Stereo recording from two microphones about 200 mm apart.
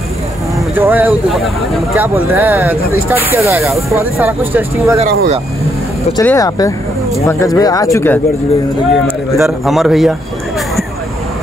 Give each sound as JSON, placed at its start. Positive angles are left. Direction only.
{"t": 0.7, "sound": "a sound", "side_deg": -10}
{"t": 2.0, "sound": "speech", "side_deg": -10}
{"t": 6.2, "sound": "speech", "side_deg": 15}
{"t": 8.9, "sound": "a man's voice", "side_deg": 0}